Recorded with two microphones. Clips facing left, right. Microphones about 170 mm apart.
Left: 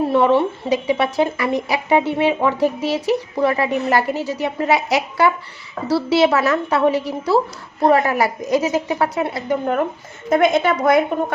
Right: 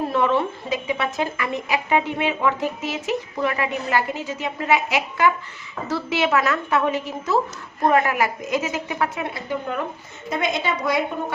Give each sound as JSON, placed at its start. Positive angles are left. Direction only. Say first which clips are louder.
{"t": 0.1, "sound": "a woman's voice", "louder": "left 6 dB", "side_deg": 30}